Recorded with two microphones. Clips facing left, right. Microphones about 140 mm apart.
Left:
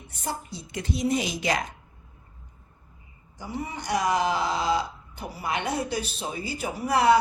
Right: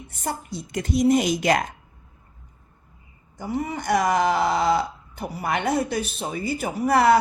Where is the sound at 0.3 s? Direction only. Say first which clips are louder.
Right 4 dB; 50° right (ahead or behind).